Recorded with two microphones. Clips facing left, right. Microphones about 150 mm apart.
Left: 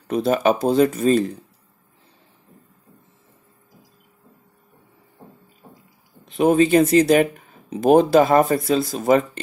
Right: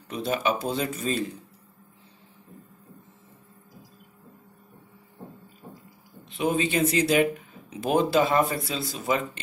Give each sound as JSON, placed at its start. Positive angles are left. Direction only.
{"t": 0.1, "sound": "speech", "side_deg": 45}
{"t": 6.2, "sound": "speech", "side_deg": 45}